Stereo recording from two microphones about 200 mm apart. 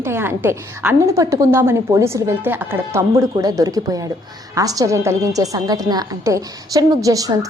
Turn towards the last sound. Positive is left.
turn(degrees=-15)  # may be behind; listen again after turning